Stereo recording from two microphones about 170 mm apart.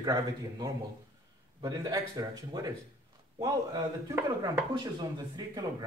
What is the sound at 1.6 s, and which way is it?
A man's voice, 20° right (ahead or behind).